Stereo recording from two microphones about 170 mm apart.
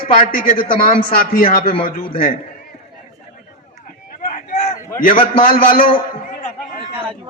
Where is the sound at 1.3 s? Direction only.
55° left (ahead or behind).